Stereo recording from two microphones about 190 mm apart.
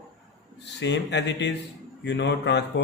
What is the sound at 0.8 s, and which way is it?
Speech, 65° left (ahead or behind).